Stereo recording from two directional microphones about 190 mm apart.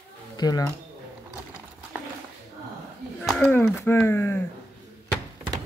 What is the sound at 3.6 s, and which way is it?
Speech, 15° left (ahead or behind).